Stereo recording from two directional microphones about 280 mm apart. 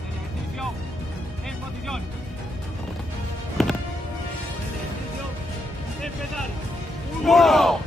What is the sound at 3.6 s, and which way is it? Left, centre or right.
Music, centre.